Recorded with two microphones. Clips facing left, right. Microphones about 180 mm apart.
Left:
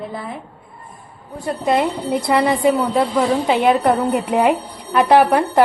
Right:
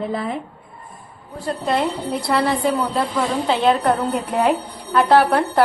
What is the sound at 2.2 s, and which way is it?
Speech, 15° left (ahead or behind).